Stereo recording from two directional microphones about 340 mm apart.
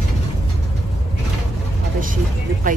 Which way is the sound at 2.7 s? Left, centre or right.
Right.